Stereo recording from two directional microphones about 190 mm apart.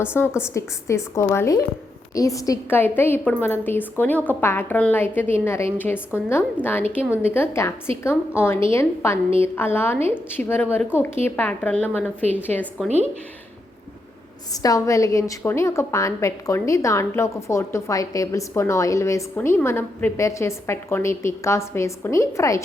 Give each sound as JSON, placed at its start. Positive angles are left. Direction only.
{"t": 0.0, "sound": "a woman's voice", "side_deg": 10}
{"t": 14.5, "sound": "a woman's voice", "side_deg": 20}